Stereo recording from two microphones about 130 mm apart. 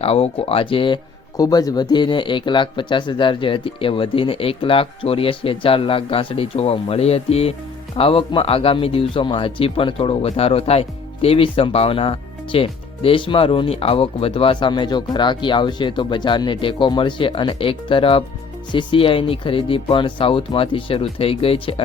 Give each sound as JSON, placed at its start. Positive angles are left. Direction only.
{"t": 0.0, "sound": "speech", "side_deg": 50}
{"t": 1.4, "sound": "speech", "side_deg": 30}